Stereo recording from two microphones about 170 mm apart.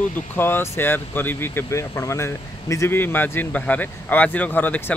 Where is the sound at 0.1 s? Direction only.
10° left (ahead or behind).